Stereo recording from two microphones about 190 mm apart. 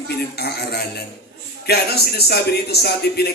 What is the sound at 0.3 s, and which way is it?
A man's voice, 55° left (ahead or behind).